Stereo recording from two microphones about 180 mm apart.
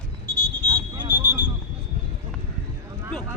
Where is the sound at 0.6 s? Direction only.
25° right (ahead or behind).